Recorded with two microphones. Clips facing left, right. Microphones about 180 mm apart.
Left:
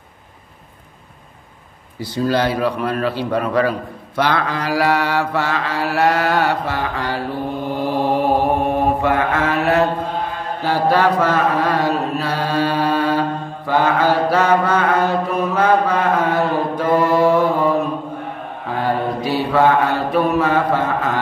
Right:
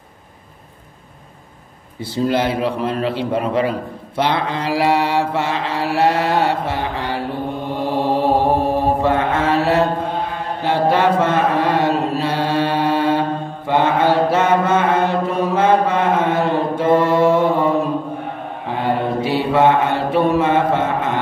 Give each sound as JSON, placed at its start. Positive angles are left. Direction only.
{"t": 2.0, "sound": "mantra", "side_deg": -25}
{"t": 10.6, "sound": "chant", "side_deg": -25}
{"t": 13.7, "sound": "mantra", "side_deg": -25}
{"t": 18.8, "sound": "mantra", "side_deg": -25}